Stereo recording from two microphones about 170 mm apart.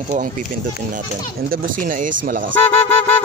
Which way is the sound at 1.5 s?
50° right (ahead or behind).